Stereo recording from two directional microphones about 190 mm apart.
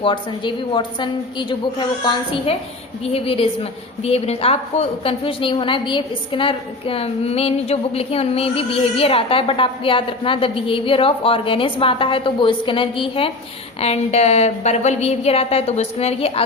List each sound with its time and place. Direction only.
0.0 s a woman's voice: 25° left (ahead or behind)
3.0 s a woman's voice: 30° left (ahead or behind)